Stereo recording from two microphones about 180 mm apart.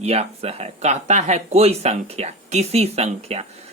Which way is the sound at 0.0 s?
35° right (ahead or behind).